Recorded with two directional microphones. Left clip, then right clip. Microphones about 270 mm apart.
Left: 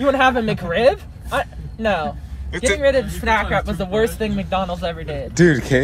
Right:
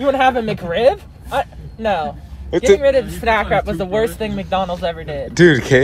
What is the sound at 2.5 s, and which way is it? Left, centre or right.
Speech, centre.